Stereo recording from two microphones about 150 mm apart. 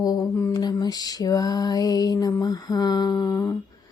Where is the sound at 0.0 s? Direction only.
25° left (ahead or behind).